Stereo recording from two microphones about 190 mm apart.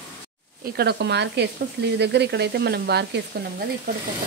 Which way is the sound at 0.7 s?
60° right (ahead or behind).